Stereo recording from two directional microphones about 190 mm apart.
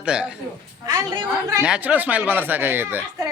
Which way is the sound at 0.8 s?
20° right (ahead or behind).